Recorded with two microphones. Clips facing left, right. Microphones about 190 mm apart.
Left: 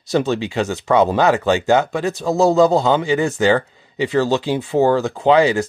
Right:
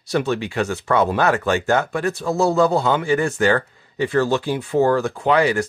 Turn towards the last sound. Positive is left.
turn(degrees=25)  # may be behind; listen again after turning